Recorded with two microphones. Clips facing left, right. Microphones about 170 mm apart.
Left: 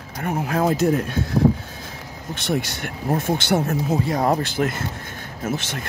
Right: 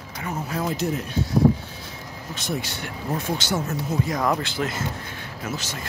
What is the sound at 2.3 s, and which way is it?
Speech, 60° left (ahead or behind).